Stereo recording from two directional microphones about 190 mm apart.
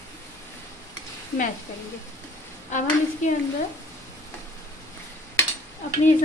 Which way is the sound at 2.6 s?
40° left (ahead or behind).